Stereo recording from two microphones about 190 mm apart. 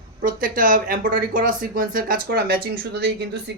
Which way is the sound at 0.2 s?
45° right (ahead or behind).